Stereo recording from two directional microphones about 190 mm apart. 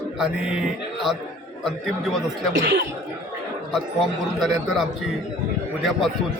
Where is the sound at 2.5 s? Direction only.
75° right (ahead or behind).